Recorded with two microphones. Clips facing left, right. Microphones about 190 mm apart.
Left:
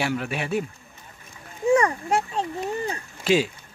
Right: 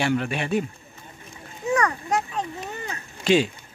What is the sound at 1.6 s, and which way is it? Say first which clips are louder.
Speech: left 4 dB; 30° left (ahead or behind).